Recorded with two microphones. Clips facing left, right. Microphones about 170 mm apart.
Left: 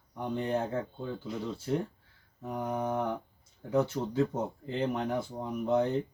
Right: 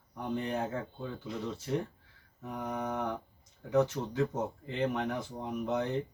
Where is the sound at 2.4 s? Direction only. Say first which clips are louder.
Left 3 dB; 35° left (ahead or behind).